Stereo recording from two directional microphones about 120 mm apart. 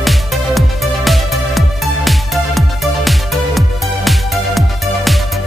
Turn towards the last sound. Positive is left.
turn(degrees=0)  # may be behind; listen again after turning